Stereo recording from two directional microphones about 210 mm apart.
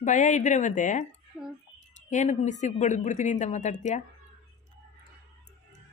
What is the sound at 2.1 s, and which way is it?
A woman's voice, 35° left (ahead or behind).